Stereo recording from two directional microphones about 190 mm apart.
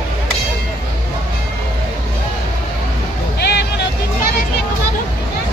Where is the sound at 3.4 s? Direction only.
60° left (ahead or behind).